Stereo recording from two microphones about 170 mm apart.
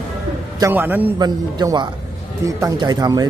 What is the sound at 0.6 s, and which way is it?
Speech, 10° right (ahead or behind).